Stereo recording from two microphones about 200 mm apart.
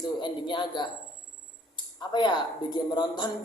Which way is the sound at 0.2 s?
25° left (ahead or behind).